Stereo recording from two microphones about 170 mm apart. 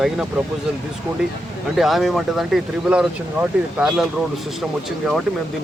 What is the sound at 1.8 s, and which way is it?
Speech, centre (ahead or behind).